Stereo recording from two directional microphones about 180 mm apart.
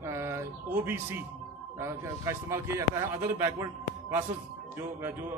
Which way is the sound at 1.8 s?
15° right (ahead or behind).